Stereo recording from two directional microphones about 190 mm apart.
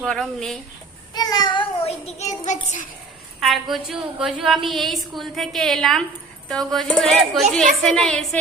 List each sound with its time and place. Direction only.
0.0 s a woman's voice: 5° left (ahead or behind)
1.1 s a child's voice: 20° left (ahead or behind); by 2.8 s 40° left (ahead or behind)
3.4 s a woman's voice: centre (ahead or behind)